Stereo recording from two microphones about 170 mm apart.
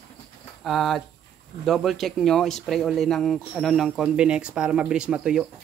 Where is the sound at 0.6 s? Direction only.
Centre (ahead or behind).